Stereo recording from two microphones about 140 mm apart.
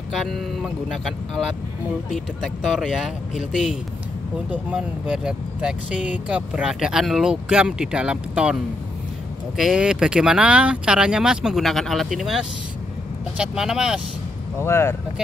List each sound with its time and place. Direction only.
0.1 s speech: centre (ahead or behind)
14.6 s speech: 20° left (ahead or behind)